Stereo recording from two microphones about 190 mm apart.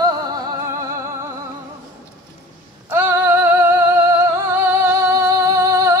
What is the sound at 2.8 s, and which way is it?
Music, 10° right (ahead or behind).